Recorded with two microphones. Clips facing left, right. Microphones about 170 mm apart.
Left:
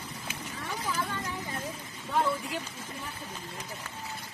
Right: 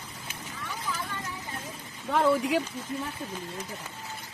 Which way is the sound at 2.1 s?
80° right.